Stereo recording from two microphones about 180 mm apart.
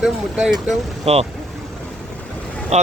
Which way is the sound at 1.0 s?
35° right (ahead or behind).